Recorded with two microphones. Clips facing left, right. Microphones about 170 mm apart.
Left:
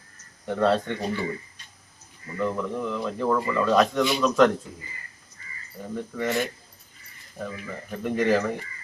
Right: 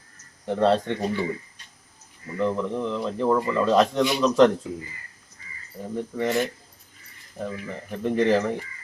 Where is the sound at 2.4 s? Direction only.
25° right (ahead or behind).